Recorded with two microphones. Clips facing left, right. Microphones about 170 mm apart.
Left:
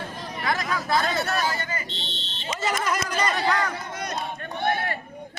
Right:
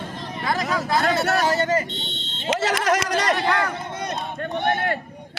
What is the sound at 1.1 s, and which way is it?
Speech, 75° right (ahead or behind).